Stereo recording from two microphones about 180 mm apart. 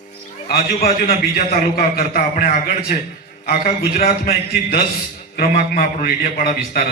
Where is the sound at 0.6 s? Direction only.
55° left (ahead or behind).